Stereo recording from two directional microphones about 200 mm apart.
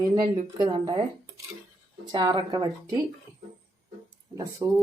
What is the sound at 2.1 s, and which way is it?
Speech, 20° right (ahead or behind).